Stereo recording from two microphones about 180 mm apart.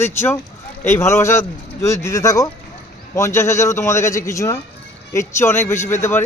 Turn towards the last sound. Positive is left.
turn(degrees=15)  # may be behind; listen again after turning